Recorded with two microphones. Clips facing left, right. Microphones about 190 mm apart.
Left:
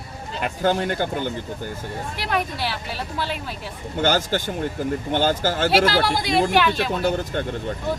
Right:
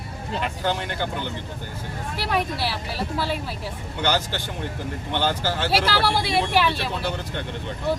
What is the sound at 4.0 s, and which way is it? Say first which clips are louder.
Speech: left 4 dB; 45° left (ahead or behind).